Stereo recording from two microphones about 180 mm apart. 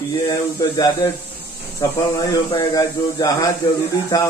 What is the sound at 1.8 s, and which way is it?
Speech, 15° left (ahead or behind).